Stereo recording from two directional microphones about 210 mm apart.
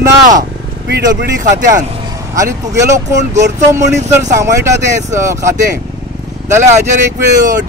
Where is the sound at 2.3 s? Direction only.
15° right (ahead or behind).